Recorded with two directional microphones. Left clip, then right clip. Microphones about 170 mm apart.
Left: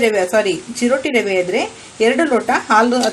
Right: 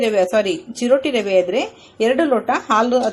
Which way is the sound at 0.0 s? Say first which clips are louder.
Left 2 dB; 30° right (ahead or behind).